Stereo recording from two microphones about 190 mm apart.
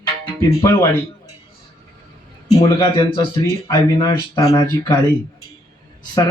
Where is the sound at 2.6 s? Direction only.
25° left (ahead or behind).